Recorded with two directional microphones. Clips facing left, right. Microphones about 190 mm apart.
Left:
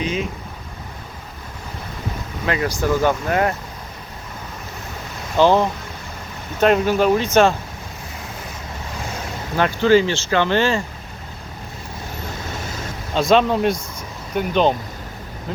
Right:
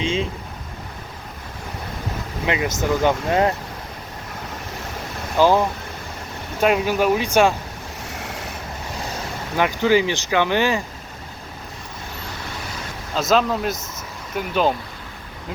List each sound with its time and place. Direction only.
0.0 s a sound: 25° right (ahead or behind)
2.5 s speech: 20° right (ahead or behind)
5.4 s speech: 10° right (ahead or behind)
9.6 s speech: 15° right (ahead or behind)
13.1 s speech: centre (ahead or behind)